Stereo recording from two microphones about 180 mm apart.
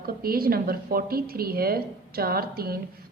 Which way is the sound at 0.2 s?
55° right (ahead or behind).